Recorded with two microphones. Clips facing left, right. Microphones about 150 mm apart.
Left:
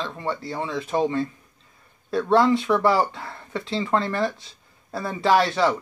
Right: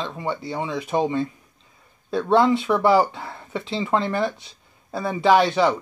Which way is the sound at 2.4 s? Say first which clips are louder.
Right 1 dB; 25° right (ahead or behind).